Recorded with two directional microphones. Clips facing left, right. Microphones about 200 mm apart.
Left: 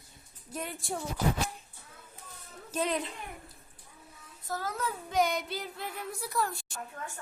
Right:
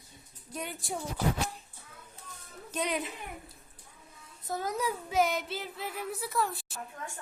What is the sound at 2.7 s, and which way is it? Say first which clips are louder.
Child singing: left 1 dB; centre (ahead or behind).